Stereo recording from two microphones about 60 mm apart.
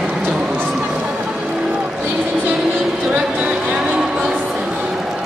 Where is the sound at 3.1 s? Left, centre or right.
Right.